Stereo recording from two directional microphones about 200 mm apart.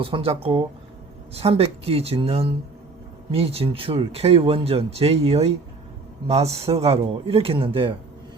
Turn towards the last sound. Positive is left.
turn(degrees=-25)  # may be behind; listen again after turning